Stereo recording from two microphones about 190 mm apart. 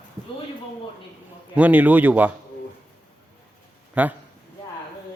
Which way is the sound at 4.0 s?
5° right (ahead or behind).